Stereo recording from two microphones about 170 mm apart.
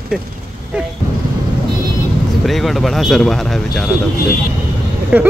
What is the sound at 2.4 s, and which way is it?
Speech, centre (ahead or behind).